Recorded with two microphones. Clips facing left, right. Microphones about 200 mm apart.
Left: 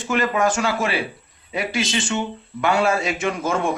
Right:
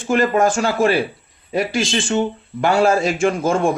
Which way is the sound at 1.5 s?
45° right (ahead or behind).